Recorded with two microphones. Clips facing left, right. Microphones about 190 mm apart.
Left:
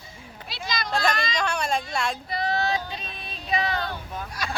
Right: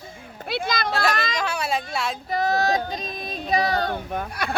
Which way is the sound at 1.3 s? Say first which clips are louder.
Even; 5° right (ahead or behind).